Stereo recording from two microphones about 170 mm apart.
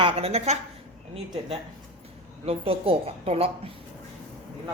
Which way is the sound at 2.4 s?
35° right (ahead or behind).